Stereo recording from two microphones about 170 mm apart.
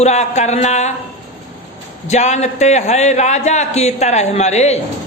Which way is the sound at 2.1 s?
45° left (ahead or behind).